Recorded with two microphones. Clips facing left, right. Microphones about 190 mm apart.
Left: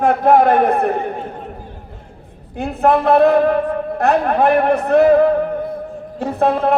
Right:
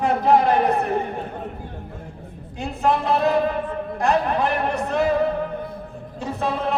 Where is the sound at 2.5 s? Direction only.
55° left (ahead or behind).